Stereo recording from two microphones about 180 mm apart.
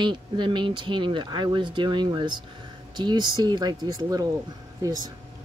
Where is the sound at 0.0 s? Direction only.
25° right (ahead or behind).